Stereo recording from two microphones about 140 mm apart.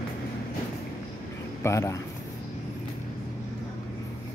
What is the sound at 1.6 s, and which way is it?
Speech, 20° left (ahead or behind).